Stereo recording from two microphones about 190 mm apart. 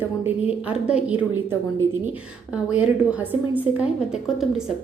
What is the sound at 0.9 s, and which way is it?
A woman's voice, 5° right (ahead or behind).